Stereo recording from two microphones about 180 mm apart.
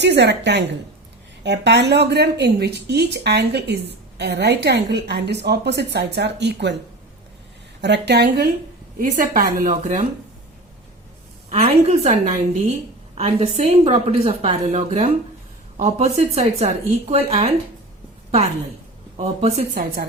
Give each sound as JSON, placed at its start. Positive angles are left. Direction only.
{"t": 0.0, "sound": "a woman's voice", "side_deg": -75}
{"t": 7.8, "sound": "a woman's voice", "side_deg": -75}
{"t": 9.0, "sound": "speech", "side_deg": -50}
{"t": 11.5, "sound": "a woman's voice", "side_deg": -40}
{"t": 19.1, "sound": "a woman's voice", "side_deg": -35}
{"t": 19.7, "sound": "speech", "side_deg": -55}